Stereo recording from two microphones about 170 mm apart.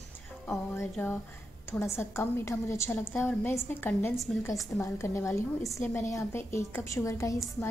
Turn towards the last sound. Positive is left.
turn(degrees=20)  # may be behind; listen again after turning